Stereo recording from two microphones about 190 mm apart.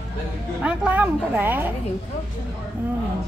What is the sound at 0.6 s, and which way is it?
A woman's voice, 10° right (ahead or behind).